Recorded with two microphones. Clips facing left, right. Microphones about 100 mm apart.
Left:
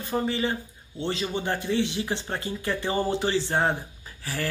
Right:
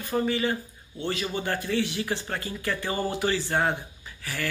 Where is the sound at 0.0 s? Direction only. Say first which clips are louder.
Right 1 dB; 25° left (ahead or behind).